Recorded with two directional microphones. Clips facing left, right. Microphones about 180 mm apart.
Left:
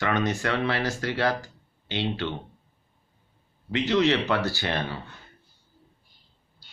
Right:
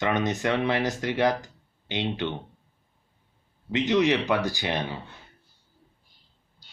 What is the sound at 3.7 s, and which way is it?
Speech, 15° right (ahead or behind).